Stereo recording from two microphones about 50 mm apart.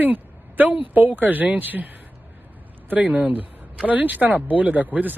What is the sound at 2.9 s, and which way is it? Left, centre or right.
Speech, right.